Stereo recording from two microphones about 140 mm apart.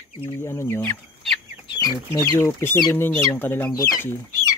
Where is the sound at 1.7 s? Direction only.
30° left (ahead or behind).